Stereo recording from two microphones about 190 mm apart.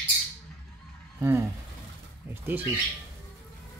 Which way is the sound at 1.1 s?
15° right (ahead or behind).